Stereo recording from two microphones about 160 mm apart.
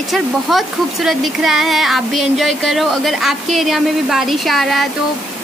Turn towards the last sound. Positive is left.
turn(degrees=0)  # may be behind; listen again after turning